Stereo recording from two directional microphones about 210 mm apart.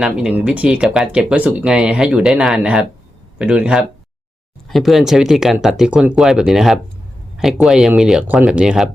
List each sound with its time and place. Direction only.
0.0 s speech: 5° right (ahead or behind)